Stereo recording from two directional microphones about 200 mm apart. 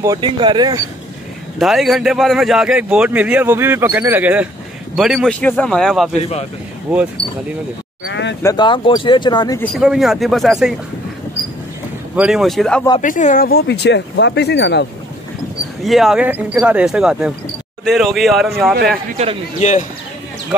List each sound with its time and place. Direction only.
0.0 s speech: 20° right (ahead or behind)
1.6 s a man's voice: centre (ahead or behind)
6.1 s speech: 30° left (ahead or behind)
6.9 s a man's voice: centre (ahead or behind)
8.1 s a sound: 60° left (ahead or behind)
8.4 s speech: 20° left (ahead or behind)
9.8 s a man's voice: centre (ahead or behind)
12.2 s a man's voice: centre (ahead or behind)
13.0 s speech: 40° left (ahead or behind); by 14.9 s 60° left (ahead or behind)
15.8 s a man's voice: centre (ahead or behind)